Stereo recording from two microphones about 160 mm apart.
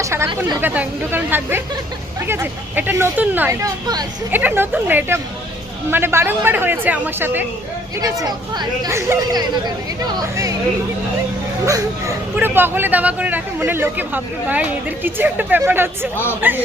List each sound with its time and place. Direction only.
0.0 s a woman's voice: 15° right (ahead or behind)
4.3 s speech: 10° right (ahead or behind)
7.9 s speech: 20° right (ahead or behind)
11.6 s speech: 20° right (ahead or behind)